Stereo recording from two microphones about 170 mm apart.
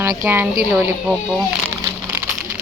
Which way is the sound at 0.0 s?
15° right (ahead or behind).